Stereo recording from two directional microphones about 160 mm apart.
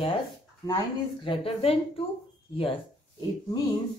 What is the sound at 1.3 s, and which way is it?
Speech, 35° left (ahead or behind).